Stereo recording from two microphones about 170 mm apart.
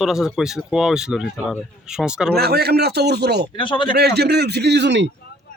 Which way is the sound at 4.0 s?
70° right (ahead or behind).